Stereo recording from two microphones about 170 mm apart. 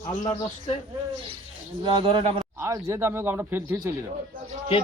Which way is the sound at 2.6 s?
15° right (ahead or behind).